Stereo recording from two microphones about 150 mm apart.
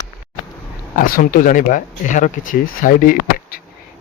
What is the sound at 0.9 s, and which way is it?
Speech, 65° left (ahead or behind).